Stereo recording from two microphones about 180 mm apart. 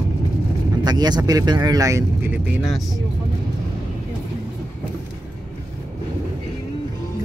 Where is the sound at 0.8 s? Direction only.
20° right (ahead or behind); by 3.0 s centre (ahead or behind).